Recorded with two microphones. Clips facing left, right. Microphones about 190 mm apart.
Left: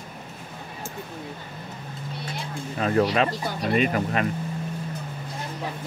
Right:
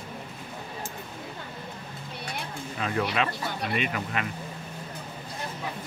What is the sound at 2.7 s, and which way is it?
Speech, 40° left (ahead or behind).